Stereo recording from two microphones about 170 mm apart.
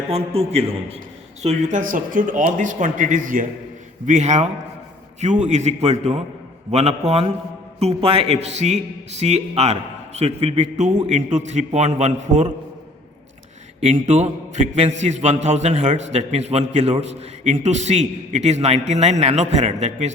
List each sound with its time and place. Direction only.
0.1 s a man's voice: 35° right (ahead or behind)
13.8 s a man's voice: 40° right (ahead or behind)